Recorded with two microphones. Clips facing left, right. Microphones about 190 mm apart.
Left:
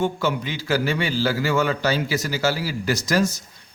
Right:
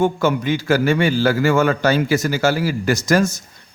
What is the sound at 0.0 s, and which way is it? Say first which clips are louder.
A man's voice: right 6 dB; 50° right (ahead or behind).